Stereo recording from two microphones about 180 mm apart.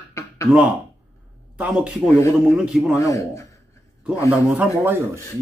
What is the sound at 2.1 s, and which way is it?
Speech, 15° left (ahead or behind).